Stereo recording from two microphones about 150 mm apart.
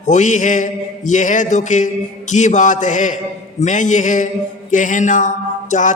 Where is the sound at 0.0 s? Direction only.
55° left (ahead or behind).